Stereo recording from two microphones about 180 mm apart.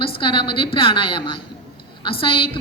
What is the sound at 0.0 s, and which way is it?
A woman's voice, 30° left (ahead or behind).